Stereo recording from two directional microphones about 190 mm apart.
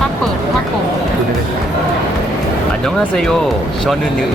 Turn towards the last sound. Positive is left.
turn(degrees=0)  # may be behind; listen again after turning